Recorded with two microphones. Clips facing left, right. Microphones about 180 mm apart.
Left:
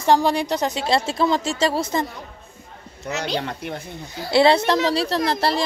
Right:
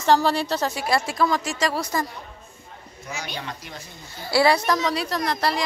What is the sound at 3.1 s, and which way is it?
Speech, 70° left (ahead or behind).